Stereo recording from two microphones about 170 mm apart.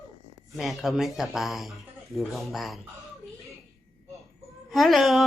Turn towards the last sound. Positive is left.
turn(degrees=0)  # may be behind; listen again after turning